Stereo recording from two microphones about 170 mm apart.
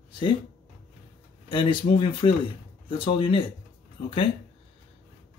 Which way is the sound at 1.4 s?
30° left (ahead or behind).